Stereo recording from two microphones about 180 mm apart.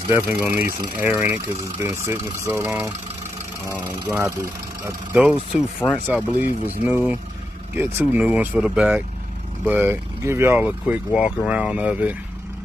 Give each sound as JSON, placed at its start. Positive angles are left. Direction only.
{"t": 0.1, "sound": "speech", "side_deg": -15}
{"t": 3.6, "sound": "speech", "side_deg": -25}
{"t": 5.1, "sound": "speech", "side_deg": -5}